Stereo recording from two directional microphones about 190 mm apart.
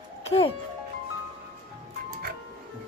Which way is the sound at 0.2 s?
30° left (ahead or behind).